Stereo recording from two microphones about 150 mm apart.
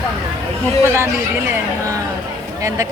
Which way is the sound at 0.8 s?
15° right (ahead or behind).